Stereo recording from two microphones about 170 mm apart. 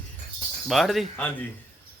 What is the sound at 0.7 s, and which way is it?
Speech, centre (ahead or behind).